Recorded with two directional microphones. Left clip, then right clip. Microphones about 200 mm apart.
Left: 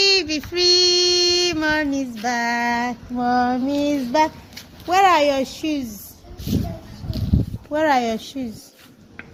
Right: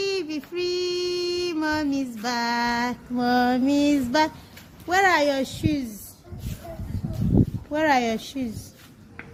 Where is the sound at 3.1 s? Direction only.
20° right (ahead or behind).